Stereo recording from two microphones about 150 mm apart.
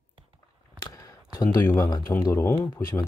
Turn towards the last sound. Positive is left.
turn(degrees=15)  # may be behind; listen again after turning